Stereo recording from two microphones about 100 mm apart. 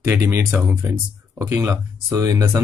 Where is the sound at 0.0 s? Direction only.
25° right (ahead or behind).